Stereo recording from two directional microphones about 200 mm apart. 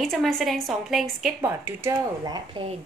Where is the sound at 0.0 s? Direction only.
Centre (ahead or behind); by 2.7 s 25° right (ahead or behind).